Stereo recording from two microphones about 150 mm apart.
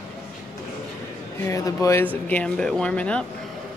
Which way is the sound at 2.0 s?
10° left (ahead or behind).